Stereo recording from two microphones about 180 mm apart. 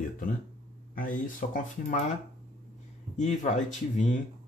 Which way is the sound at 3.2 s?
40° left (ahead or behind).